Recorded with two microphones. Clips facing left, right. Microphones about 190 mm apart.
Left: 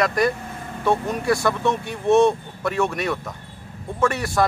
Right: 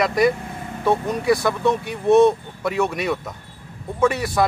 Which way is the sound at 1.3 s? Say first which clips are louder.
Right 1 dB; 15° right (ahead or behind).